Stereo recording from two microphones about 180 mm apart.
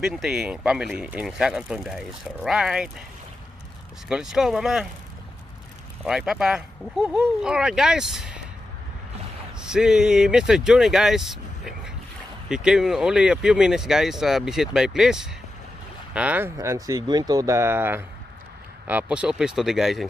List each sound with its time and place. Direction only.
0.0 s speech: 5° right (ahead or behind)
4.1 s speech: 5° right (ahead or behind)
6.0 s speech: 5° right (ahead or behind)
9.7 s speech: 5° right (ahead or behind)